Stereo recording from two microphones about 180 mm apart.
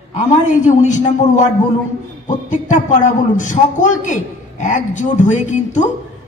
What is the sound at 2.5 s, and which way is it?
A man's voice, 45° left (ahead or behind).